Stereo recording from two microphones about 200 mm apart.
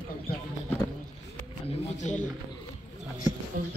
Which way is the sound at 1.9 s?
35° left (ahead or behind).